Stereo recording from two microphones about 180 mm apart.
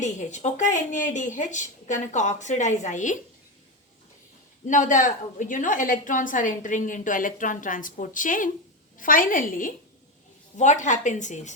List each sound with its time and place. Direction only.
0.0 s a woman's voice: 40° left (ahead or behind)
4.6 s a woman's voice: 45° left (ahead or behind)